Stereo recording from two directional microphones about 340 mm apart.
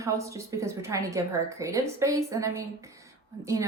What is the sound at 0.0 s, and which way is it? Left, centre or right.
Speech, centre.